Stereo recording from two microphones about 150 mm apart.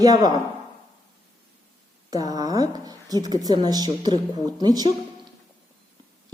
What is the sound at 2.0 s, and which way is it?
A woman's voice, 25° right (ahead or behind).